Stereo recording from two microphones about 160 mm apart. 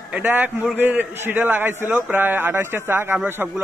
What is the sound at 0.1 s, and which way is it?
A man's voice, 10° right (ahead or behind).